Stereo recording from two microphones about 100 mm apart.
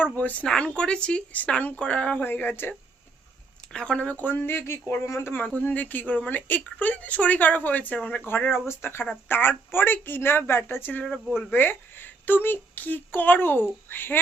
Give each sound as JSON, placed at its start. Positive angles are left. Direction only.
{"t": 0.0, "sound": "speech", "side_deg": 15}
{"t": 3.7, "sound": "speech", "side_deg": 10}
{"t": 5.3, "sound": "speech", "side_deg": 15}
{"t": 11.0, "sound": "speech", "side_deg": 5}
{"t": 11.5, "sound": "speech", "side_deg": 20}